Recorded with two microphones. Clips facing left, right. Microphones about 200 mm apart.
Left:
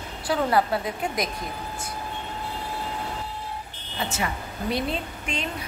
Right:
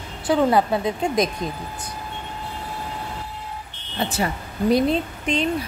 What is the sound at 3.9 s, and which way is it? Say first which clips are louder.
Speech: right 5 dB; 35° right (ahead or behind).